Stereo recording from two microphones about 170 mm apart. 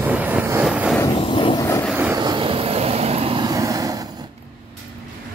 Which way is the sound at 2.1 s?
25° right (ahead or behind).